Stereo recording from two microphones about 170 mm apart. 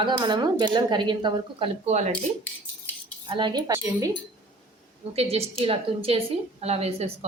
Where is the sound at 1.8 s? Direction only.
40° right (ahead or behind).